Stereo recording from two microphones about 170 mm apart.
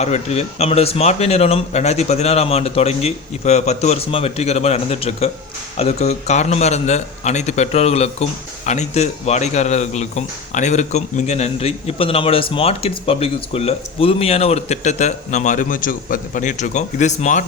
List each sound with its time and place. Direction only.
0.0 s a man's voice: 40° left (ahead or behind)